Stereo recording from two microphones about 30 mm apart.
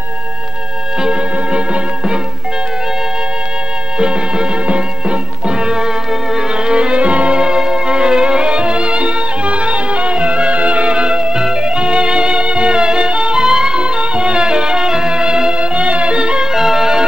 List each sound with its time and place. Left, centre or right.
1.0 s music: right
4.0 s music: right
7.3 s music: right
15.5 s music: right
16.5 s music: centre